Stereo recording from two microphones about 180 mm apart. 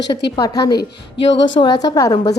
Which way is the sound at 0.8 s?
80° left.